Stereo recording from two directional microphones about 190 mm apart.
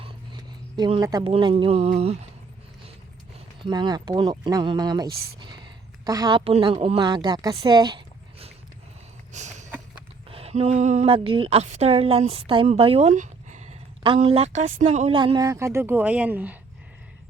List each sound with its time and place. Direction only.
0.8 s a woman's voice: 20° right (ahead or behind)
3.3 s a woman's voice: 25° right (ahead or behind)
9.3 s a sound: 40° right (ahead or behind)
10.2 s a woman's voice: 30° right (ahead or behind); by 16.6 s 10° right (ahead or behind)